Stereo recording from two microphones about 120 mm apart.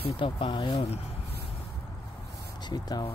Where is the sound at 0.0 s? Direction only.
45° left (ahead or behind).